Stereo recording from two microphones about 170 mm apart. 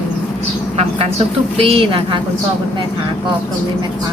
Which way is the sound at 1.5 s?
35° right (ahead or behind).